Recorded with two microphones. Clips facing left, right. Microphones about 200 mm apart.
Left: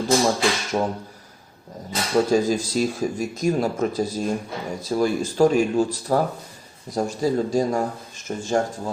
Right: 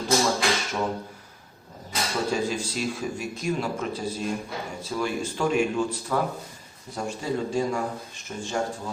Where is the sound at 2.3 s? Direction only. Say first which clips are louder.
Left 7 dB; 40° left (ahead or behind).